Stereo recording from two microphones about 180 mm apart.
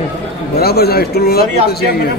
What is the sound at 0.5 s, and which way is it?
A man's voice, 60° left (ahead or behind).